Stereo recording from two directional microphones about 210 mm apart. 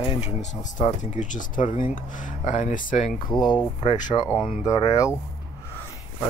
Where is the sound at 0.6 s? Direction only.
35° left (ahead or behind).